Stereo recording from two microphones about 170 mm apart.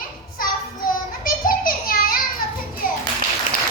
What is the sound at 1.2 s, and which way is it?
Child singing, 60° left (ahead or behind).